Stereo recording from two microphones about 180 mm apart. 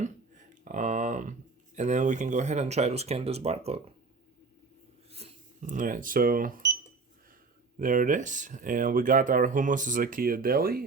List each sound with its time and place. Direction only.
0.0 s speech: 45° right (ahead or behind)
5.1 s speech: 40° right (ahead or behind)
7.8 s speech: 45° right (ahead or behind)